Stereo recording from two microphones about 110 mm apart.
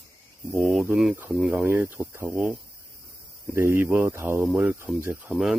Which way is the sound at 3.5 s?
20° right (ahead or behind).